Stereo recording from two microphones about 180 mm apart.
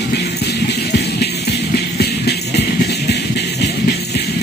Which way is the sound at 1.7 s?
65° left (ahead or behind).